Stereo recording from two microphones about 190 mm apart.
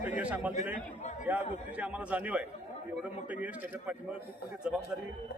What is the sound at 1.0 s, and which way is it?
Speech, 40° left (ahead or behind).